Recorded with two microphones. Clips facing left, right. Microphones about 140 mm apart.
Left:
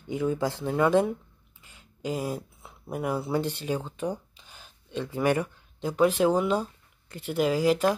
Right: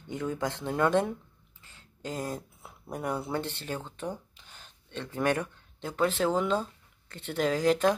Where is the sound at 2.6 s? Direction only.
5° left (ahead or behind).